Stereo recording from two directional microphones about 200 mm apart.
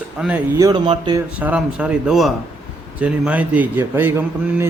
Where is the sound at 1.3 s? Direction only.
5° right (ahead or behind).